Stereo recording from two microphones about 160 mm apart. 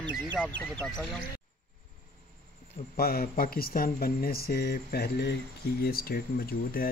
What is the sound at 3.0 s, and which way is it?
Speech, 70° left (ahead or behind).